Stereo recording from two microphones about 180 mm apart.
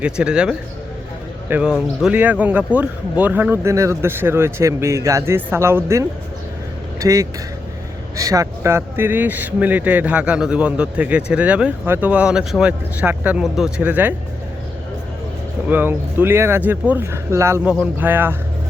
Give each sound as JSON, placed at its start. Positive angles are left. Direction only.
{"t": 0.0, "sound": "speech", "side_deg": -5}
{"t": 15.7, "sound": "speech", "side_deg": -10}